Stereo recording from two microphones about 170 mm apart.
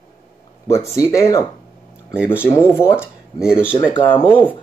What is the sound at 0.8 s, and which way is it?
Speech, 20° left (ahead or behind).